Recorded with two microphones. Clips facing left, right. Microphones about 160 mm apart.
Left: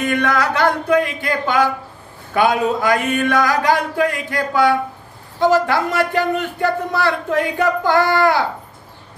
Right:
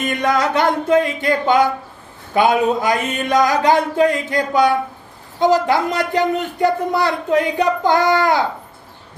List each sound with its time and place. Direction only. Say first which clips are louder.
0.0 s speech: even; 20° right (ahead or behind)